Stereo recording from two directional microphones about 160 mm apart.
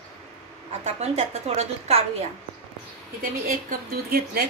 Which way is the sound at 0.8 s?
45° right (ahead or behind).